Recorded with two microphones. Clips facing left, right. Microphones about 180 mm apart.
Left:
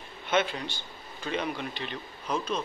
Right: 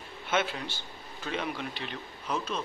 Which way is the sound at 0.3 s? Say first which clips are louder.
Left 3 dB; 5° right (ahead or behind).